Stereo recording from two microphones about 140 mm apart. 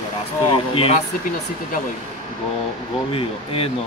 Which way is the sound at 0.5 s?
40° left (ahead or behind).